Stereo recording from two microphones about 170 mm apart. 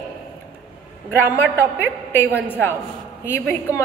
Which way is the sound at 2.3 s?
10° left (ahead or behind).